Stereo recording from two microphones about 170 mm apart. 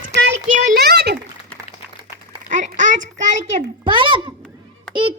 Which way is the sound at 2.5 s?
45° right (ahead or behind).